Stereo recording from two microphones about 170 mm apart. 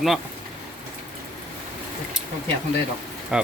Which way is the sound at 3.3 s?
5° right (ahead or behind).